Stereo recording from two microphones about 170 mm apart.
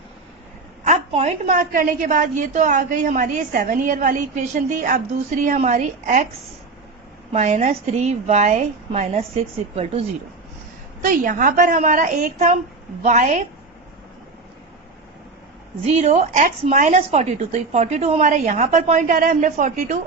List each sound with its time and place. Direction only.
0.9 s a woman's voice: 40° right (ahead or behind)
7.3 s a woman's voice: 45° right (ahead or behind)
11.0 s a woman's voice: 50° right (ahead or behind)
15.9 s a woman's voice: 40° right (ahead or behind)